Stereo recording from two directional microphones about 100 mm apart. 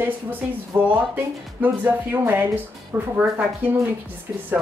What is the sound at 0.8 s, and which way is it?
Speech, 15° right (ahead or behind).